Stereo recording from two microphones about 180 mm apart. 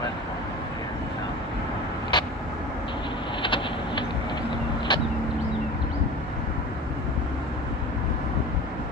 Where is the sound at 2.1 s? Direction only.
25° left (ahead or behind).